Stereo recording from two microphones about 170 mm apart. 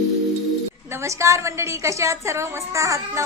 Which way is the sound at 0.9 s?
15° right (ahead or behind).